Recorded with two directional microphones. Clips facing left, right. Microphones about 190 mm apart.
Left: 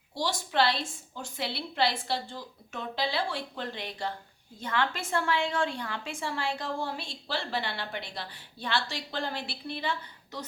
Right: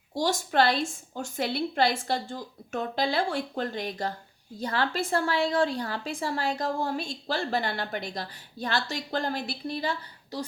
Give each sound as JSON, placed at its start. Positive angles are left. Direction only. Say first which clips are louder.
{"t": 0.1, "sound": "a woman's voice", "louder": "right 5 dB", "side_deg": -45}